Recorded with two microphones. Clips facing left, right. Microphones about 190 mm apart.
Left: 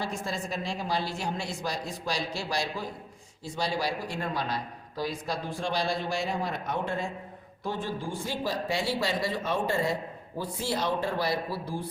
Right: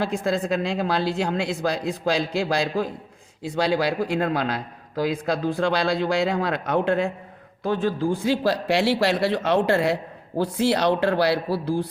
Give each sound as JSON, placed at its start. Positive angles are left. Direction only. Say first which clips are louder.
{"t": 0.0, "sound": "speech", "louder": "right 9 dB", "side_deg": -60}
{"t": 3.4, "sound": "speech", "louder": "right 8 dB", "side_deg": -65}
{"t": 7.7, "sound": "speech", "louder": "right 10 dB", "side_deg": -90}